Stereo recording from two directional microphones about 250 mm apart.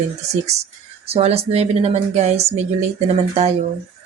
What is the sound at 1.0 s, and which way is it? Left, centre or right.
Speech, right.